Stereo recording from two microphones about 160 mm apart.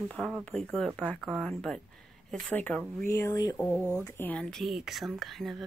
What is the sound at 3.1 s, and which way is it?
Speech, 20° left (ahead or behind).